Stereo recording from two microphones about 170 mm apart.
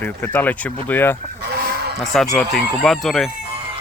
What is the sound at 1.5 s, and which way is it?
Chicken, 75° right (ahead or behind).